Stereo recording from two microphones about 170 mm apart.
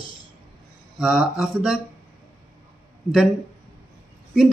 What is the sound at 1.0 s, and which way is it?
Speech, 5° right (ahead or behind).